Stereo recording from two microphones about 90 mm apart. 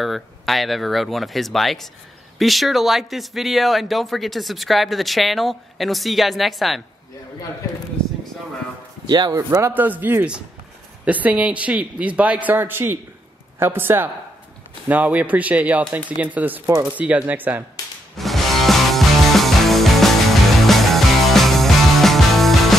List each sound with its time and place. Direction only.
0.0 s speech: centre (ahead or behind)
8.0 s a sound: 10° left (ahead or behind)
9.0 s speech: 55° right (ahead or behind)
9.6 s a man's voice: 25° right (ahead or behind)
18.1 s music: centre (ahead or behind)